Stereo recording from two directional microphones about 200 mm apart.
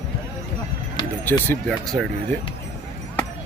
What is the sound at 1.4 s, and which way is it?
Speech, 5° left (ahead or behind).